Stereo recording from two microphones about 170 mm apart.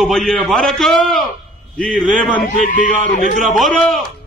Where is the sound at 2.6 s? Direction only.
50° left (ahead or behind).